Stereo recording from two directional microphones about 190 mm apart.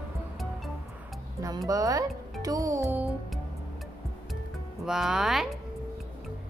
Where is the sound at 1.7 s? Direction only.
20° right (ahead or behind).